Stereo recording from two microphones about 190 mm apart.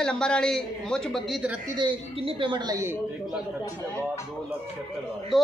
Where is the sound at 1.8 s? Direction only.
25° right (ahead or behind); by 3.4 s 10° right (ahead or behind).